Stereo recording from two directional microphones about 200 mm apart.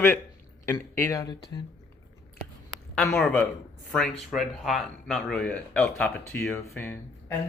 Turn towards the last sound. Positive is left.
turn(degrees=15)  # may be behind; listen again after turning